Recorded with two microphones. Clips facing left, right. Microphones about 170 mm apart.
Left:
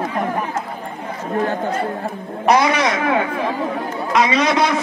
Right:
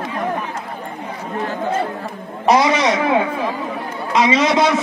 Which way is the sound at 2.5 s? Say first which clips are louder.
Right 2 dB; 25° right (ahead or behind).